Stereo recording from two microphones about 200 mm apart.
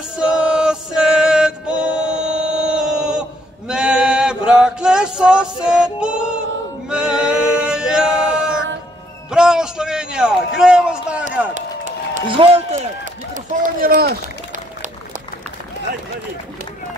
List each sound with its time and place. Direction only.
0.2 s music: 5° right (ahead or behind)
9.3 s a sound: 5° right (ahead or behind)
11.5 s run: 40° right (ahead or behind)
12.3 s a man's voice: 25° right (ahead or behind)
13.3 s run: 40° right (ahead or behind)